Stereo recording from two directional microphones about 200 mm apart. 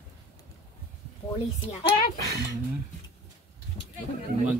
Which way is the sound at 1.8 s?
55° left (ahead or behind).